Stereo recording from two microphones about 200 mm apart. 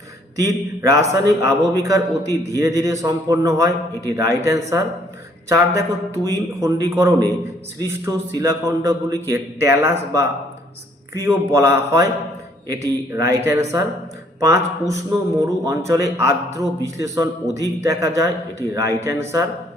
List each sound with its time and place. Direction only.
0.3 s a man's voice: 15° right (ahead or behind)